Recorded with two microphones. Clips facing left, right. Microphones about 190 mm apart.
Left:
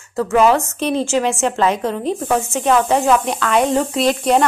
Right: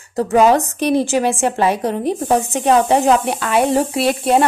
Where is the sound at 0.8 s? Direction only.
15° right (ahead or behind).